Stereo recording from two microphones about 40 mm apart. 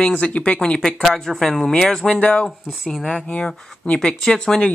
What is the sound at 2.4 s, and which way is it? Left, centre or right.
Speech, centre.